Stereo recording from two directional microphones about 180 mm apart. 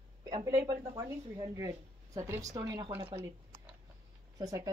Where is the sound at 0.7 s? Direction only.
20° right (ahead or behind).